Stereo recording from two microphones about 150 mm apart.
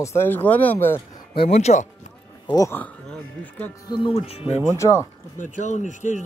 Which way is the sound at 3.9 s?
35° left (ahead or behind).